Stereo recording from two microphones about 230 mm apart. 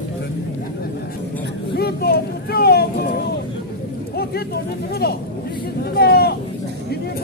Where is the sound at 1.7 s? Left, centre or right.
Left.